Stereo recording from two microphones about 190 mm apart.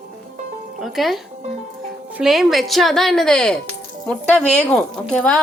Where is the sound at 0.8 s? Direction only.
Centre (ahead or behind).